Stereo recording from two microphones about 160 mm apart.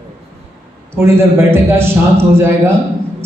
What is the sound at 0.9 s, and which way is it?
A man's voice, 15° right (ahead or behind).